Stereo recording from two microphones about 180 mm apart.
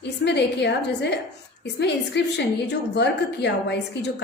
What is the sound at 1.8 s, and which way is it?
A woman's voice, 70° left (ahead or behind).